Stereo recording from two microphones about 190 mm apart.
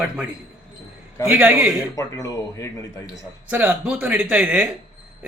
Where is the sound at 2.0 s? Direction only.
15° left (ahead or behind).